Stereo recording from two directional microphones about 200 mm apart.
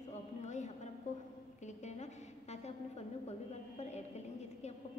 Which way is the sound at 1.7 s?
35° left (ahead or behind).